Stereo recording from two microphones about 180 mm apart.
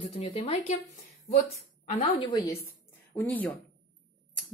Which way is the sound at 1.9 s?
30° left (ahead or behind).